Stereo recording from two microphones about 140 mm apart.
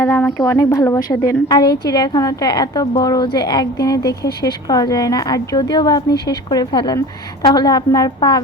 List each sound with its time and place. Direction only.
0.0 s a woman's voice: 15° left (ahead or behind)